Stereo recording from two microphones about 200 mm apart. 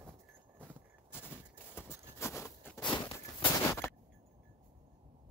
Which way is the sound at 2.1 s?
15° left (ahead or behind).